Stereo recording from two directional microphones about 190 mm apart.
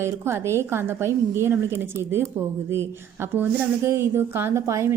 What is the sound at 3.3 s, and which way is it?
A woman's voice, 10° right (ahead or behind).